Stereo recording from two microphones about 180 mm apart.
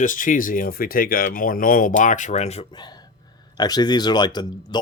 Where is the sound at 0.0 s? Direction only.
45° left (ahead or behind).